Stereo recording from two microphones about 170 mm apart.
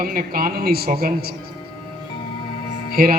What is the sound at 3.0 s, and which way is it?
Speech, 60° right (ahead or behind).